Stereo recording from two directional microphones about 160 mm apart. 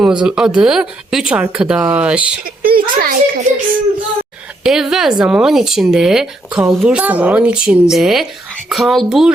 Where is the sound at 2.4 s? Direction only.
65° right (ahead or behind).